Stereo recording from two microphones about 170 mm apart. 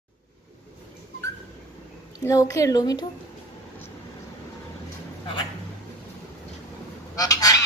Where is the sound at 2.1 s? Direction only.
20° left (ahead or behind).